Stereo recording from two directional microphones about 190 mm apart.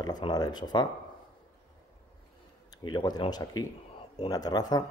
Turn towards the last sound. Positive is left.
turn(degrees=20)  # may be behind; listen again after turning